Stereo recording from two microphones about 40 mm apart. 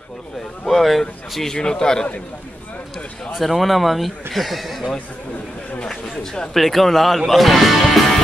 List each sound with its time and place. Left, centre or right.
0.7 s a sound: centre
1.5 s a man's voice: centre
3.3 s speech: centre
5.9 s speech: centre
6.5 s speech: centre